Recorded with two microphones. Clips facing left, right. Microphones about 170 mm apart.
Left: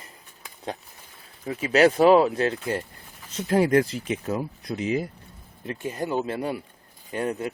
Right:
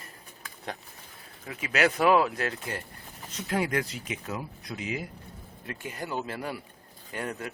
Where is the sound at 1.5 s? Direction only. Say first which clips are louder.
Left 8 dB; 30° left (ahead or behind).